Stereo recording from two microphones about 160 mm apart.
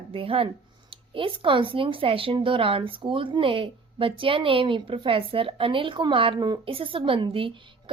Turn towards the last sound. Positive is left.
turn(degrees=-35)  # may be behind; listen again after turning